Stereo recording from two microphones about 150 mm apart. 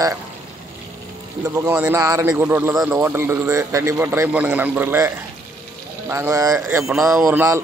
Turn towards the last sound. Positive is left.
turn(degrees=-15)  # may be behind; listen again after turning